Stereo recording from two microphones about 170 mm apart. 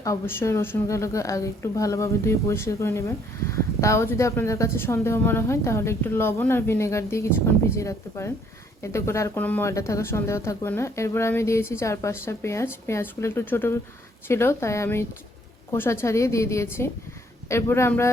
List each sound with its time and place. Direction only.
0.0 s speech: 15° left (ahead or behind)